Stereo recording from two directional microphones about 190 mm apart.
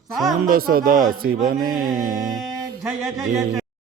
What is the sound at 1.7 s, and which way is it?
Mantra, 20° right (ahead or behind).